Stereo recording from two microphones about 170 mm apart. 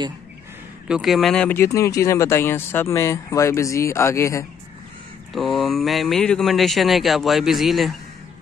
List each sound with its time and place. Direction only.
0.8 s speech: centre (ahead or behind); by 4.5 s 15° left (ahead or behind)
5.3 s speech: centre (ahead or behind)